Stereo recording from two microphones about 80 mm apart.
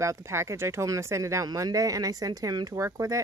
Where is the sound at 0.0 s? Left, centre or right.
Right.